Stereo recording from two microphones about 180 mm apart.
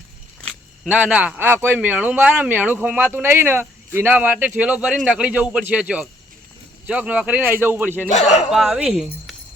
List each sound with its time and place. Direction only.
0.9 s speech: 10° right (ahead or behind)
8.1 s speech: 40° left (ahead or behind)
8.4 s speech: 5° right (ahead or behind)